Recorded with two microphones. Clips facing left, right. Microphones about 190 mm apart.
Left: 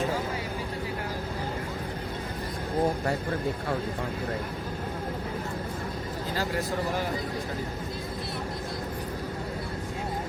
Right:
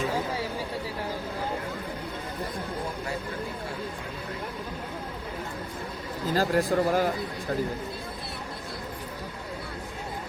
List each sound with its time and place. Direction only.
6.3 s speech: 50° right (ahead or behind)